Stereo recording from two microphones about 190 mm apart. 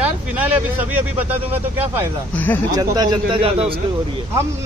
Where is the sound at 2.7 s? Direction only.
20° right (ahead or behind).